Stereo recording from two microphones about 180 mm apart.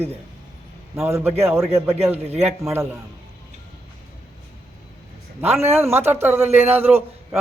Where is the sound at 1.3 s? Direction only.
35° right (ahead or behind).